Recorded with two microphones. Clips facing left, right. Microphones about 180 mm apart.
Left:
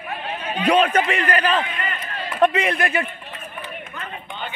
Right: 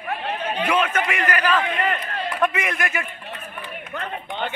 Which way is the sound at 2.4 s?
30° left (ahead or behind).